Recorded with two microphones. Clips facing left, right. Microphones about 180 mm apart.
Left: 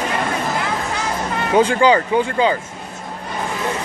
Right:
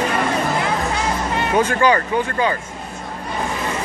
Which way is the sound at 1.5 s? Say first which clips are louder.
Left 3 dB; 15° left (ahead or behind).